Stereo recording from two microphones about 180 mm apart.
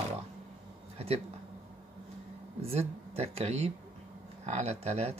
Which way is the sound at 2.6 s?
35° right (ahead or behind).